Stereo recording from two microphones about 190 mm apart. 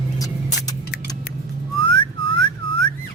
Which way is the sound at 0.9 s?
60° left (ahead or behind).